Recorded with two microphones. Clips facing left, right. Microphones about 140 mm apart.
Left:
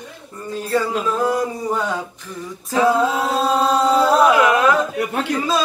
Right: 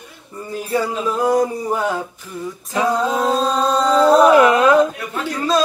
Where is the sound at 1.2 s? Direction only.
10° right (ahead or behind).